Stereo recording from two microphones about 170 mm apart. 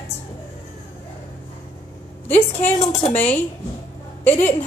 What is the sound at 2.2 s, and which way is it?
Speech, 10° left (ahead or behind).